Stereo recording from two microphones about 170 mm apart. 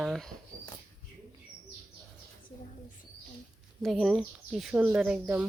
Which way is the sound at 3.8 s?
Centre (ahead or behind).